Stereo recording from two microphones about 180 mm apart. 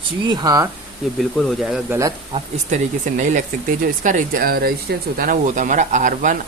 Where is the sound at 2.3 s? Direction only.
40° right (ahead or behind).